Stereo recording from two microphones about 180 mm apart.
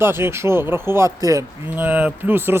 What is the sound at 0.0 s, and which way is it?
Speech, 15° right (ahead or behind).